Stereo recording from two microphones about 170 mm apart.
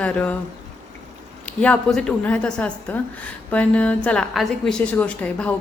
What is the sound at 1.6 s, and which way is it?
A woman's voice, 5° left (ahead or behind).